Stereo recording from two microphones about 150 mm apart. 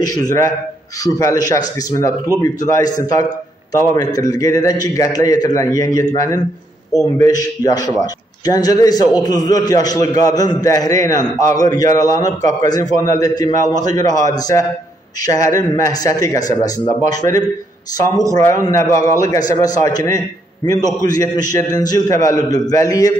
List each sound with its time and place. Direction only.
0.0 s a man's voice: 25° left (ahead or behind)